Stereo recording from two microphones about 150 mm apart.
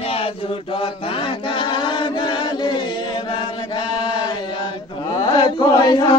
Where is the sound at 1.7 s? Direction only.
30° left (ahead or behind).